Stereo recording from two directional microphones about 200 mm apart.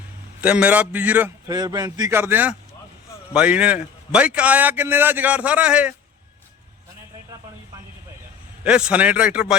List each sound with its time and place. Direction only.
0.4 s a man's voice: 5° right (ahead or behind)
1.5 s a man's voice: 20° right (ahead or behind)
8.6 s a man's voice: 5° right (ahead or behind)